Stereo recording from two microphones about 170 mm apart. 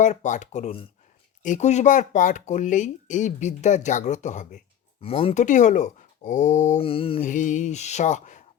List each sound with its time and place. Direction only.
0.0 s speech: 45° left (ahead or behind)
7.2 s speech: 50° left (ahead or behind)